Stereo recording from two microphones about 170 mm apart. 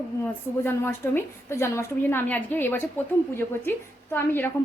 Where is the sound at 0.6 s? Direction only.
15° left (ahead or behind).